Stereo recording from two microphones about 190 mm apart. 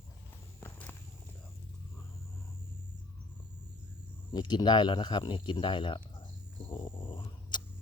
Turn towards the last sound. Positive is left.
turn(degrees=25)  # may be behind; listen again after turning